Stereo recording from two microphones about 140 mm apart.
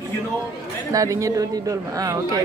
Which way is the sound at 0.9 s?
25° right (ahead or behind).